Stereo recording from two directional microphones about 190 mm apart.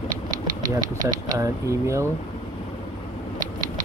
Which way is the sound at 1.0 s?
20° right (ahead or behind).